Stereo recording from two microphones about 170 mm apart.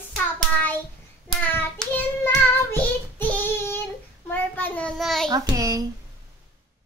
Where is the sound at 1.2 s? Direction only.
10° left (ahead or behind).